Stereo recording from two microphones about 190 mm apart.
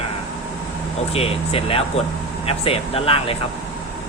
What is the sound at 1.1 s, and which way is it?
Speech, 30° left (ahead or behind).